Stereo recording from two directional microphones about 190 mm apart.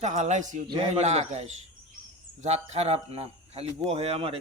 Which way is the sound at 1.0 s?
35° right (ahead or behind).